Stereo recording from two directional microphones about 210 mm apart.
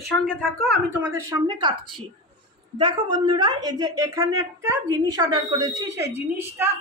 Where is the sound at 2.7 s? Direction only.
20° right (ahead or behind).